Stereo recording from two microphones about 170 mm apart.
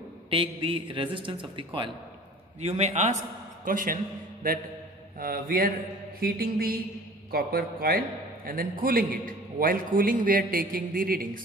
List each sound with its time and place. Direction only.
0.3 s a man's voice: 30° right (ahead or behind)
3.6 s a man's voice: 55° right (ahead or behind)